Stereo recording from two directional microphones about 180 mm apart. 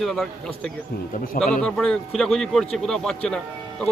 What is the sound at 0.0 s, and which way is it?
Speech, centre (ahead or behind).